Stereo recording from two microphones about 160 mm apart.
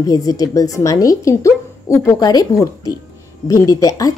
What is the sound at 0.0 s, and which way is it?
Speech, 20° left (ahead or behind).